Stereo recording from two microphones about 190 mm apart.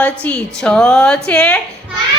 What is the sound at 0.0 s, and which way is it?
A woman's voice, 5° left (ahead or behind).